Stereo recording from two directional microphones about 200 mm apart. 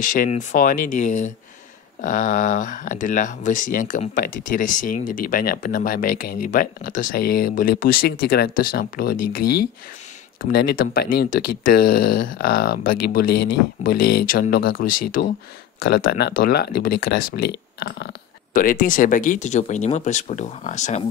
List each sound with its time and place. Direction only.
0.0 s speech: 40° left (ahead or behind)